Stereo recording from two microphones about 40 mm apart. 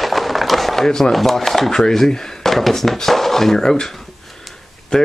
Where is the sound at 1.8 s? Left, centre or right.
Centre.